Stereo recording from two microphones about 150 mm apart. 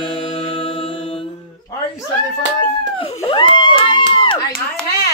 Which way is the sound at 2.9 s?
40° left (ahead or behind).